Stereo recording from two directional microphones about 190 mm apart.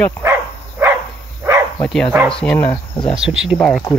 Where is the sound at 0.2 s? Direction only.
10° right (ahead or behind).